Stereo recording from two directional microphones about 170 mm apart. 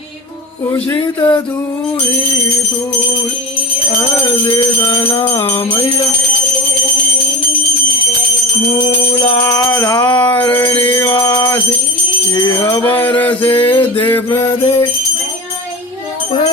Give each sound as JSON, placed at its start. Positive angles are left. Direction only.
{"t": 0.9, "sound": "music", "side_deg": 25}
{"t": 4.8, "sound": "music", "side_deg": 20}
{"t": 9.4, "sound": "mantra", "side_deg": 15}
{"t": 10.2, "sound": "a sound", "side_deg": 10}
{"t": 10.9, "sound": "jingle bell", "side_deg": 15}
{"t": 12.3, "sound": "mantra", "side_deg": 20}